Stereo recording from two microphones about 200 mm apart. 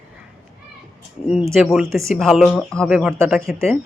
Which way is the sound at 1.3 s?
5° right (ahead or behind).